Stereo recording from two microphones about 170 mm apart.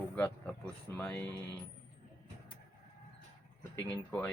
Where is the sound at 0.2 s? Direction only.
10° left (ahead or behind).